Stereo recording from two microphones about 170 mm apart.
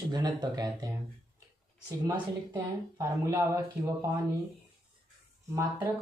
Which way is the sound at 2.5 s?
20° right (ahead or behind).